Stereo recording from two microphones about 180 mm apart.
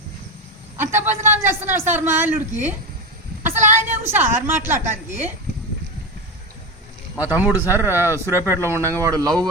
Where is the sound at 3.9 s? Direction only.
10° right (ahead or behind).